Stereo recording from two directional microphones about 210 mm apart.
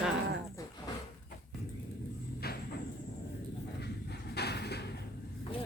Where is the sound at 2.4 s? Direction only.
45° left (ahead or behind).